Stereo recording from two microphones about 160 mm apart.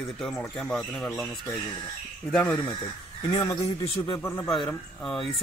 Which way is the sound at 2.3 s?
10° left (ahead or behind).